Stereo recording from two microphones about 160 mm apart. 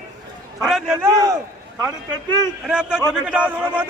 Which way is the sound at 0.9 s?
20° right (ahead or behind).